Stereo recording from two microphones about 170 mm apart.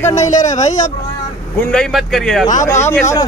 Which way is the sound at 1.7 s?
Centre (ahead or behind).